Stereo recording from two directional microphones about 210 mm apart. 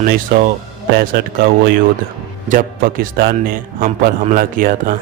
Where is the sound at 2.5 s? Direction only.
40° right (ahead or behind).